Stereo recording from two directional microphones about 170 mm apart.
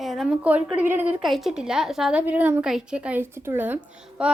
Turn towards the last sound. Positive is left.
turn(degrees=-5)  # may be behind; listen again after turning